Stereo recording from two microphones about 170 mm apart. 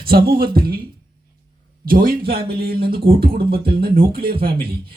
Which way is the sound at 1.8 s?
60° right (ahead or behind).